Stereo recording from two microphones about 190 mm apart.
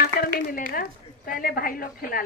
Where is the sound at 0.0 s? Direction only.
50° left (ahead or behind).